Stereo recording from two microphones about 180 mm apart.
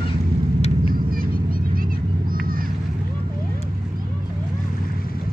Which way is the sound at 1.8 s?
50° right (ahead or behind).